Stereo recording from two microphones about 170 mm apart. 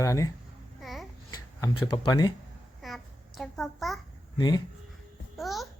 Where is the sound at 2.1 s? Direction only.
20° left (ahead or behind).